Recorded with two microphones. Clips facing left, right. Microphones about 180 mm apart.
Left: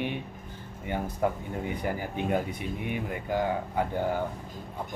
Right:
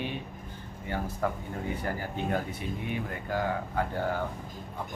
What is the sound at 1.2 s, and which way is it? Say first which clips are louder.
Speech: left 4 dB; 15° left (ahead or behind).